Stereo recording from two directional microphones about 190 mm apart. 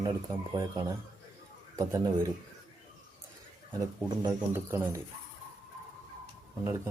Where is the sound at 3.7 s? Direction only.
15° right (ahead or behind).